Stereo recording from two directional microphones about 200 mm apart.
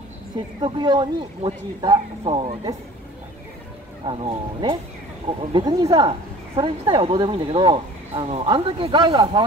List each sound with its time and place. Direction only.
0.6 s speech: 25° right (ahead or behind)
4.0 s speech: 25° right (ahead or behind)